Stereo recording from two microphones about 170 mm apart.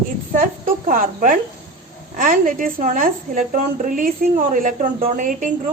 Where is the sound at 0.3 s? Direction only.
50° right (ahead or behind).